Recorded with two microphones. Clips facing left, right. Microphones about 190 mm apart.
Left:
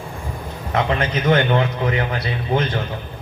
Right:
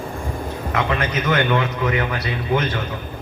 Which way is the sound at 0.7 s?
30° left (ahead or behind).